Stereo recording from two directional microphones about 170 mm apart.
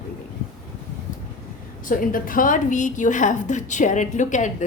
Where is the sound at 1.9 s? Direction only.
55° left (ahead or behind).